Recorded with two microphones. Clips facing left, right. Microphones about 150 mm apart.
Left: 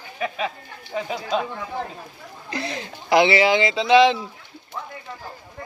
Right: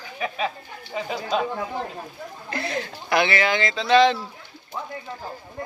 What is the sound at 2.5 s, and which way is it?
Speech, 25° left (ahead or behind).